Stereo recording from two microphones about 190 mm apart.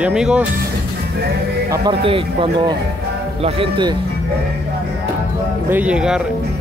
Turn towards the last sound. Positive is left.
turn(degrees=-5)  # may be behind; listen again after turning